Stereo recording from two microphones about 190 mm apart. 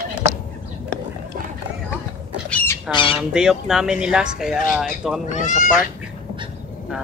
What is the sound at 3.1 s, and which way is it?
Speech, 5° right (ahead or behind).